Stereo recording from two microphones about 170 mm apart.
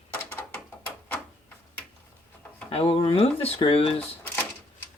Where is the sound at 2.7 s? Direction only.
35° left (ahead or behind).